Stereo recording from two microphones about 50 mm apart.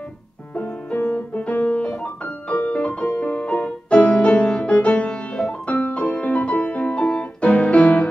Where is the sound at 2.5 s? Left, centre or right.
Left.